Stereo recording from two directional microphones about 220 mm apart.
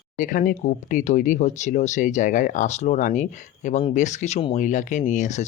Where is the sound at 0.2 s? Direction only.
40° left (ahead or behind).